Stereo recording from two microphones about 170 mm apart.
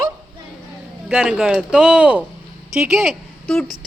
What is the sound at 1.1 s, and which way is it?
Speech, 5° right (ahead or behind).